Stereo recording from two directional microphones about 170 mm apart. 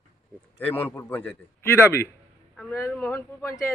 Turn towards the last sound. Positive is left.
turn(degrees=15)  # may be behind; listen again after turning